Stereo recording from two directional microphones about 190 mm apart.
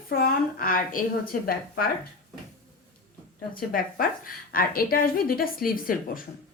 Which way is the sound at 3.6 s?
50° left (ahead or behind).